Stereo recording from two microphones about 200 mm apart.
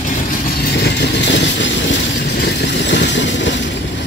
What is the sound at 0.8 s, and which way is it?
Vehicle, 60° left (ahead or behind).